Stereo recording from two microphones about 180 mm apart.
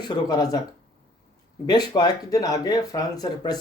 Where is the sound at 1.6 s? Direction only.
25° left (ahead or behind).